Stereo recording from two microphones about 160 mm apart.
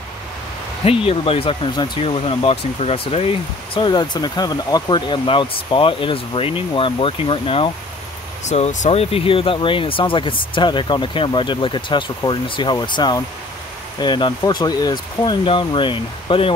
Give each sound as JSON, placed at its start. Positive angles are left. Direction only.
{"t": 0.8, "sound": "speech", "side_deg": 35}
{"t": 8.5, "sound": "speech", "side_deg": 45}